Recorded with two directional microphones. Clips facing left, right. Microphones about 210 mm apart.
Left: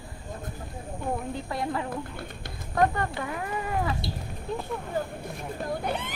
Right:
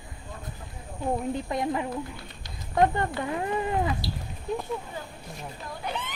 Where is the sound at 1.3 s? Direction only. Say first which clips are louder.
Right 3 dB; 20° right (ahead or behind).